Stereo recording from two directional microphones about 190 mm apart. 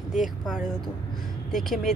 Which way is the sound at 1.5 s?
Centre (ahead or behind).